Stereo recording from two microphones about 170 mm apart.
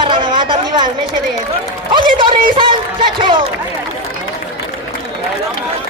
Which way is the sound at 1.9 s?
30° right (ahead or behind).